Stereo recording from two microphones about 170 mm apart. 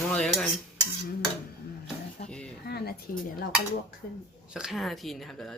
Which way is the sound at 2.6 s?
70° left (ahead or behind).